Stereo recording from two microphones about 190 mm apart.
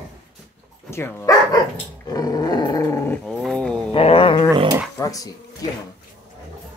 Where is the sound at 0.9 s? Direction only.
10° left (ahead or behind).